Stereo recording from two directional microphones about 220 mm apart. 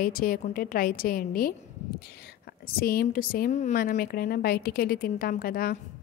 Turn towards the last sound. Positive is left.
turn(degrees=40)  # may be behind; listen again after turning